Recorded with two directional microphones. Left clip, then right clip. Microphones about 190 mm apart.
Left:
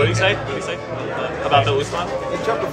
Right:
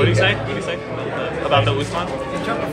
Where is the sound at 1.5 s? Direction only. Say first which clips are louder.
Left 2 dB; 25° left (ahead or behind).